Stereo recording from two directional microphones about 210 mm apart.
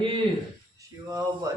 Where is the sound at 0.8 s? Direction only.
15° right (ahead or behind).